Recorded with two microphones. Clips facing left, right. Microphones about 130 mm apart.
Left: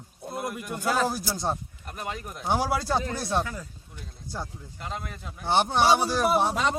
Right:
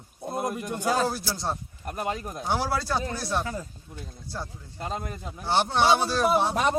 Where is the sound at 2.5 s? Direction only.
15° left (ahead or behind).